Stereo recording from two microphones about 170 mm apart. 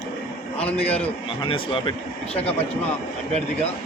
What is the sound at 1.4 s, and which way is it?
Speech, 30° left (ahead or behind).